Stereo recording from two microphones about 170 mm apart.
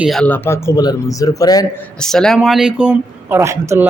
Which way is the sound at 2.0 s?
5° left (ahead or behind).